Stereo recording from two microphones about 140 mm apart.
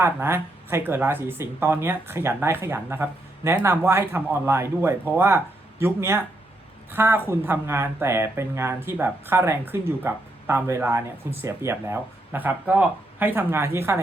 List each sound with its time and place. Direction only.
0.0 s speech: 15° right (ahead or behind)